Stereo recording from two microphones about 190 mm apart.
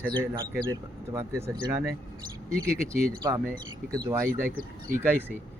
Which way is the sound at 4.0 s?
20° right (ahead or behind).